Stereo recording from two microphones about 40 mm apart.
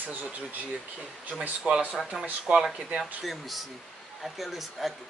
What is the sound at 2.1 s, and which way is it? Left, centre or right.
Speech, centre.